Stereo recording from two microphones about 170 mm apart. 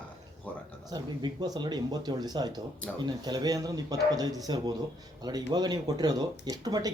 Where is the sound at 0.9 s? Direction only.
25° right (ahead or behind).